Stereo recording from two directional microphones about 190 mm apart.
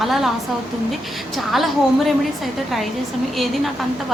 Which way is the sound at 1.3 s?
Centre (ahead or behind).